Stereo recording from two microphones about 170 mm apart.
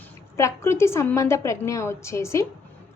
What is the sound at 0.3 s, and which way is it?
A woman's voice, 15° left (ahead or behind).